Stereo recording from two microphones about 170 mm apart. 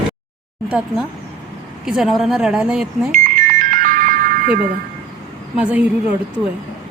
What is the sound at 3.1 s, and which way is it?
Music, 50° right (ahead or behind).